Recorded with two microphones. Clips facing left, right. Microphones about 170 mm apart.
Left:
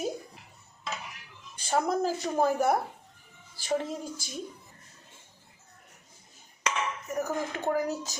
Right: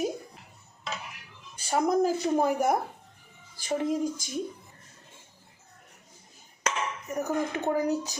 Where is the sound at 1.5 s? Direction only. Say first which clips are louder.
Right 3 dB; 10° right (ahead or behind).